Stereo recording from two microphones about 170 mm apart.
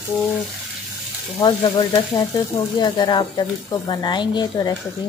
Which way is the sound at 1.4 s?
25° left (ahead or behind).